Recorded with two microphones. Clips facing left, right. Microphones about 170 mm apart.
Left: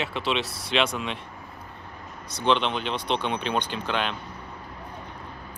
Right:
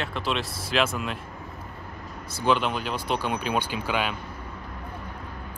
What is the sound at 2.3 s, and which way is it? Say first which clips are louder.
Speech: even; 5° right (ahead or behind).